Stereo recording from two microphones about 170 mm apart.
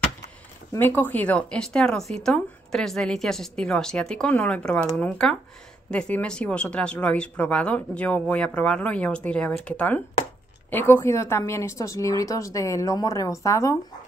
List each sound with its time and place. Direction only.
0.7 s a woman's voice: 10° left (ahead or behind)